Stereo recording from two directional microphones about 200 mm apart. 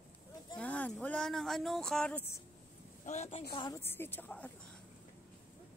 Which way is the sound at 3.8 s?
10° left (ahead or behind).